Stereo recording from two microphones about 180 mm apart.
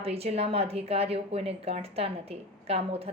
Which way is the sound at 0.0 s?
35° right (ahead or behind).